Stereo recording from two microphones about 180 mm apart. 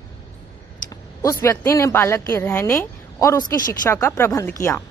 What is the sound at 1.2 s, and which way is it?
A woman's voice, 15° left (ahead or behind).